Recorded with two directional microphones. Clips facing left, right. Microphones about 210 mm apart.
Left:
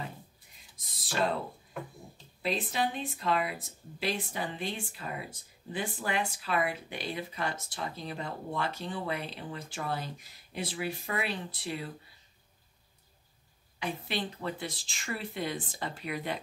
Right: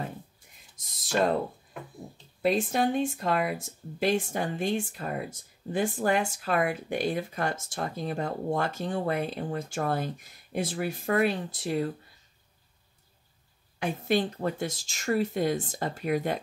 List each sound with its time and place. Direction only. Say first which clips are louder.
0.7 s speech: right 5 dB; 45° right (ahead or behind)
2.4 s speech: right 6 dB; 45° right (ahead or behind)
13.7 s speech: right 8 dB; 50° right (ahead or behind)